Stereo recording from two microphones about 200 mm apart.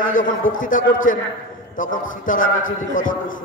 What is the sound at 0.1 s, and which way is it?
A man's voice, 40° left (ahead or behind).